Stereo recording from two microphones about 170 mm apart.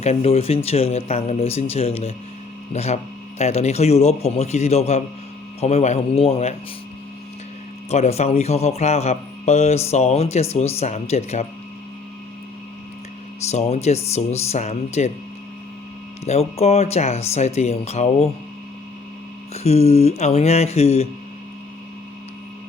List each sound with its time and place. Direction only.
0.0 s a man's voice: 40° left (ahead or behind)
7.9 s a man's voice: 40° left (ahead or behind)
13.5 s a man's voice: 40° left (ahead or behind)
16.2 s a man's voice: 40° left (ahead or behind)
19.5 s a man's voice: 40° left (ahead or behind)